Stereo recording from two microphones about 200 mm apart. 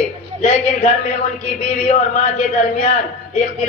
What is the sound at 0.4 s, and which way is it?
A man's voice, 35° left (ahead or behind).